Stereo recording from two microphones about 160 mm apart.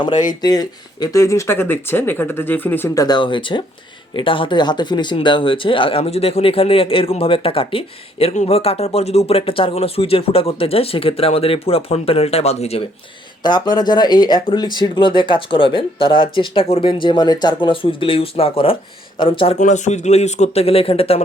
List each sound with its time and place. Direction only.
0.4 s speech: 25° left (ahead or behind); by 12.8 s 40° left (ahead or behind)
13.4 s speech: 25° left (ahead or behind)
19.5 s speech: 50° left (ahead or behind)